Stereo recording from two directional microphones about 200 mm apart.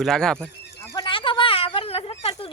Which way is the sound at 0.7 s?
20° left (ahead or behind).